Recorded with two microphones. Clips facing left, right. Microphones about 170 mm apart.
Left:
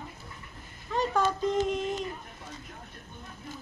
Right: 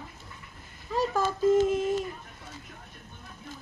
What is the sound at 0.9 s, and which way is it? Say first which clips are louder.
Speech: even; 5° right (ahead or behind).